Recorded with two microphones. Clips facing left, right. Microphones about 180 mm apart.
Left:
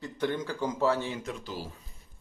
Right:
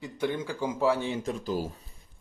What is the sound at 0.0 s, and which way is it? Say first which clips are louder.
Speech: even; 10° right (ahead or behind).